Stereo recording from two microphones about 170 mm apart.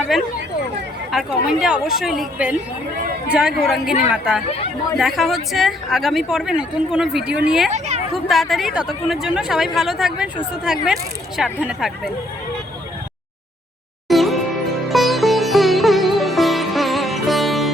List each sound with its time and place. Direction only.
0.1 s speech: centre (ahead or behind)
7.7 s speech: 45° right (ahead or behind)
8.1 s speech: centre (ahead or behind)
14.1 s music: centre (ahead or behind)
14.8 s sitar: centre (ahead or behind)